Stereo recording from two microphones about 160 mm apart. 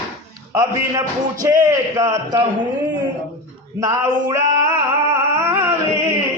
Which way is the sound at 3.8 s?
20° right (ahead or behind).